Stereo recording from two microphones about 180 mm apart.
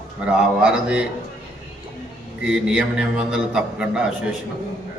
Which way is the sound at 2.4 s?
5° right (ahead or behind).